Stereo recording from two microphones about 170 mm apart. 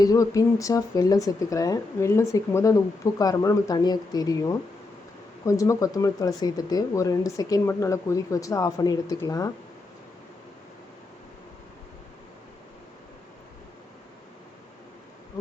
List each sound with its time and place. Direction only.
0.0 s speech: 20° left (ahead or behind)